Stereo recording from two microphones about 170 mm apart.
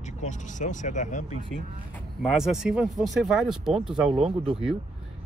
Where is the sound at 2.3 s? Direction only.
5° right (ahead or behind).